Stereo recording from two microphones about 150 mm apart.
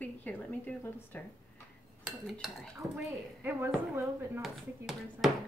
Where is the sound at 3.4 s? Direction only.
15° right (ahead or behind).